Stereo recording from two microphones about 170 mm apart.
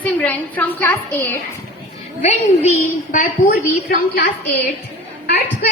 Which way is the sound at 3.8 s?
60° left (ahead or behind).